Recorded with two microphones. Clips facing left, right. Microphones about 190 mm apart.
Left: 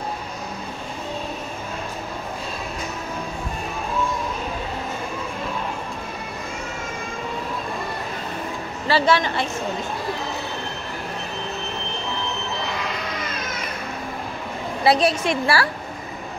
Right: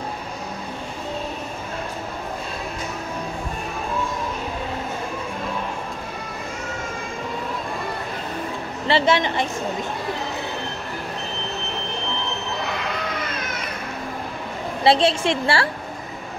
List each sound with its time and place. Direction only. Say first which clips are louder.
8.8 s a woman's voice: even; 20° right (ahead or behind)
14.8 s a woman's voice: right 1 dB; 25° right (ahead or behind)